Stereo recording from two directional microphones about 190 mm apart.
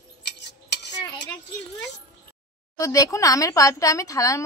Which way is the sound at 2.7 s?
15° left (ahead or behind).